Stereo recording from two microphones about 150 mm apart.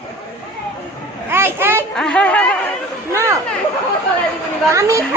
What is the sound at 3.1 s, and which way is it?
Speech, 20° right (ahead or behind).